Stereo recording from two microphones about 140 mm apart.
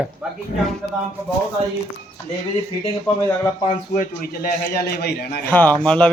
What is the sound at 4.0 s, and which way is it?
A man's voice, 90° left.